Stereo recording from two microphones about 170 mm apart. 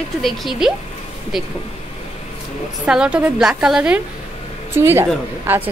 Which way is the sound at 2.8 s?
5° right (ahead or behind).